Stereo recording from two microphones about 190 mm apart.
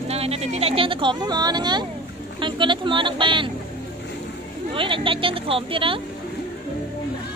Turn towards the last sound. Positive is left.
turn(degrees=-30)  # may be behind; listen again after turning